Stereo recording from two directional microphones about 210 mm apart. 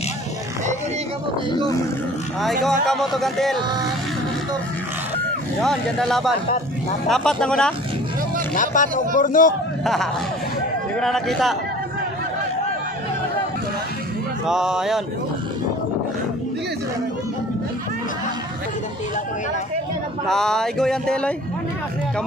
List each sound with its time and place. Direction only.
2.6 s speech: centre (ahead or behind)
5.6 s speech: centre (ahead or behind)
8.5 s a man's voice: 40° left (ahead or behind)
11.0 s speech: centre (ahead or behind)
14.5 s speech: 5° right (ahead or behind)
20.2 s speech: centre (ahead or behind)